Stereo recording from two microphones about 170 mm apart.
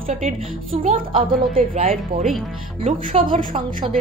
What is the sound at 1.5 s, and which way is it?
Speech, 55° right (ahead or behind).